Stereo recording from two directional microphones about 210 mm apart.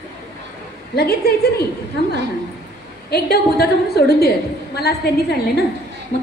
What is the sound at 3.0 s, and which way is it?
A woman's voice, 50° left (ahead or behind).